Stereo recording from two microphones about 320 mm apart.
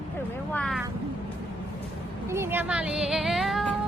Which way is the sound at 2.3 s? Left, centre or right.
Centre.